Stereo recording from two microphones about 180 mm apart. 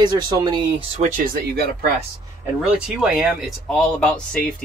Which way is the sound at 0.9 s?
45° right (ahead or behind).